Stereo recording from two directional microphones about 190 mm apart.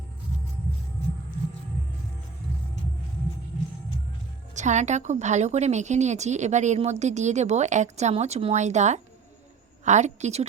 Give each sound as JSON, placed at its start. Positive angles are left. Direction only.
{"t": 4.5, "sound": "a woman's voice", "side_deg": -40}